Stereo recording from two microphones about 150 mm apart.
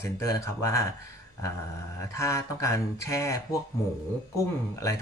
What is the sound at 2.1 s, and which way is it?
A man's voice, 20° left (ahead or behind).